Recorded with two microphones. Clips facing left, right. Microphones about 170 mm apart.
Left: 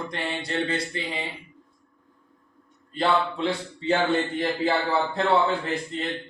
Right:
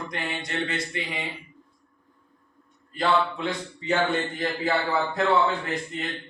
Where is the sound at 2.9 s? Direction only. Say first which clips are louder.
Even; 30° left (ahead or behind).